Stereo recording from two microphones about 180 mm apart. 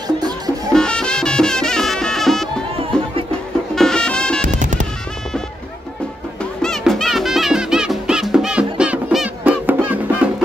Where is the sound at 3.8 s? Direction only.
5° left (ahead or behind).